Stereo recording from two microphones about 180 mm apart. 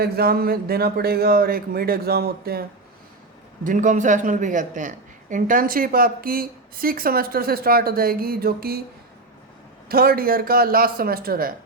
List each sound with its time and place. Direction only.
0.0 s speech: 60° right (ahead or behind)
3.6 s a man's voice: 45° right (ahead or behind)
9.9 s speech: 55° right (ahead or behind)